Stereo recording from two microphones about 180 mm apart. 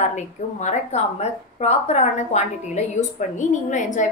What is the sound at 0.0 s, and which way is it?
A woman's voice, 40° left (ahead or behind).